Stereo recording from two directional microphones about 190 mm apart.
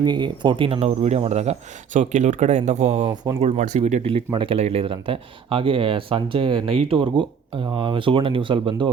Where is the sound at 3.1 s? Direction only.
20° right (ahead or behind).